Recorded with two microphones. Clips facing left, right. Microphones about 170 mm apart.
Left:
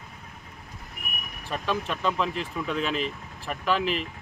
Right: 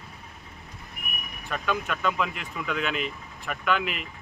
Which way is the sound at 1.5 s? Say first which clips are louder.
Even; 30° left (ahead or behind).